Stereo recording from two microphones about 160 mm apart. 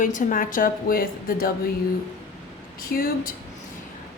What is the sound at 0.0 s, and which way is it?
A woman's voice, 55° left (ahead or behind).